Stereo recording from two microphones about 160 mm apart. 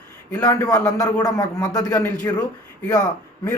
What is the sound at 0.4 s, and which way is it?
A man's voice, 20° left (ahead or behind).